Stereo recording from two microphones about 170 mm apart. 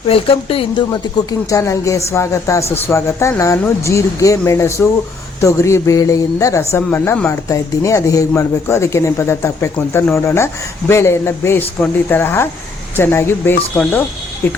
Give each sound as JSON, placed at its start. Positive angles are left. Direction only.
{"t": 0.1, "sound": "speech", "side_deg": 35}
{"t": 1.3, "sound": "a woman's voice", "side_deg": 20}